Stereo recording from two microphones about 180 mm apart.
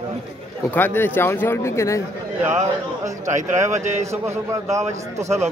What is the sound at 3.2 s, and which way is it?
Speech, 40° right (ahead or behind).